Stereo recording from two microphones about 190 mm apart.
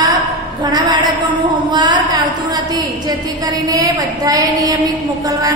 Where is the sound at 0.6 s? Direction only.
20° right (ahead or behind).